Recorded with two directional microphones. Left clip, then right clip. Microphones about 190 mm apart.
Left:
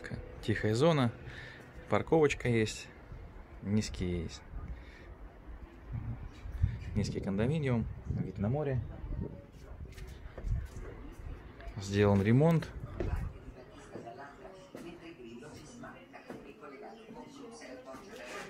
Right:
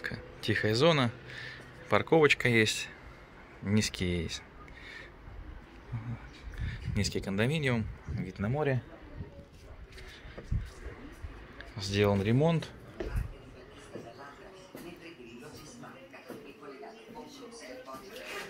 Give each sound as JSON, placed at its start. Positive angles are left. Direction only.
{"t": 0.0, "sound": "a sound", "side_deg": 10}
{"t": 3.6, "sound": "speech", "side_deg": 0}
{"t": 6.6, "sound": "speech", "side_deg": 0}
{"t": 11.7, "sound": "speech", "side_deg": 20}